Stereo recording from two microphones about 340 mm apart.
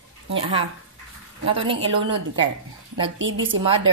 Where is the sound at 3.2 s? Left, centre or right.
Right.